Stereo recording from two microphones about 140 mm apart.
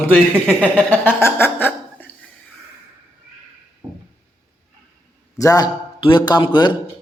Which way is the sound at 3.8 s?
25° right (ahead or behind).